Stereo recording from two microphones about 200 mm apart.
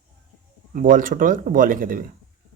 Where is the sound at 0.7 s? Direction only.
40° right (ahead or behind).